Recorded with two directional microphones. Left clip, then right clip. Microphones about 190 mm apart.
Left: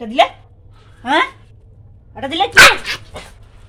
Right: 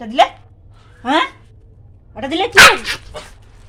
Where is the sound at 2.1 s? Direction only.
10° right (ahead or behind).